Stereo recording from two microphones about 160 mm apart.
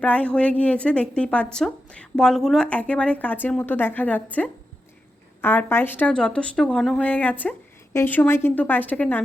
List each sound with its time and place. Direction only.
0.0 s speech: 10° left (ahead or behind)